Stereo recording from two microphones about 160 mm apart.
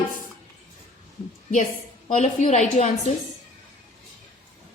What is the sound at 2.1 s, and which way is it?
Speech, 45° left (ahead or behind).